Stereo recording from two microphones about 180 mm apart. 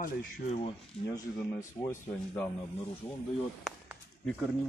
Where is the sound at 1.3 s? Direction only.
10° left (ahead or behind).